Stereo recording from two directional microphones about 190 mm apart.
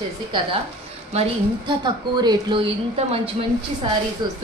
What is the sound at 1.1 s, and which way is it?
Speech, 25° right (ahead or behind).